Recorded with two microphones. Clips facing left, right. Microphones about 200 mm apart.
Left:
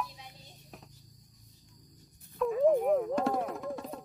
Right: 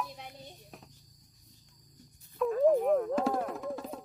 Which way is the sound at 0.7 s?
Centre (ahead or behind).